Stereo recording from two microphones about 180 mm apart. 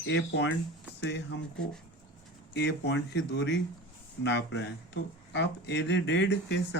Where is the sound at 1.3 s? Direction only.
90° left.